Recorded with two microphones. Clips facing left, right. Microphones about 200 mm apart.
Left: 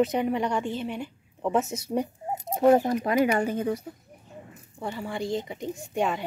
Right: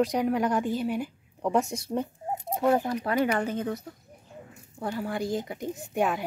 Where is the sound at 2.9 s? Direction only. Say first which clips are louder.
Left 3 dB; 15° left (ahead or behind).